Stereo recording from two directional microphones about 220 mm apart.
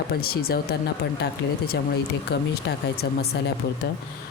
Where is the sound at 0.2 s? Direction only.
45° left (ahead or behind).